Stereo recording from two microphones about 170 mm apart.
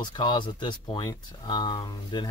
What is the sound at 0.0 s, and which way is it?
Speech, 25° left (ahead or behind).